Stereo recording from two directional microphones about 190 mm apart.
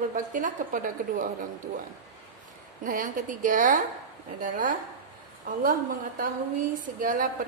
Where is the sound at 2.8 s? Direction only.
45° right (ahead or behind).